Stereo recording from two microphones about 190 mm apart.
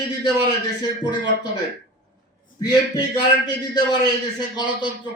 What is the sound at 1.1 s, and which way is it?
Speech, 25° left (ahead or behind).